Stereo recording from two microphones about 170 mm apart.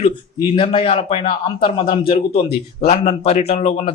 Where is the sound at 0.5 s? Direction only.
35° left (ahead or behind).